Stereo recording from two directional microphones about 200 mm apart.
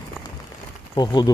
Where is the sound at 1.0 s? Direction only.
20° left (ahead or behind).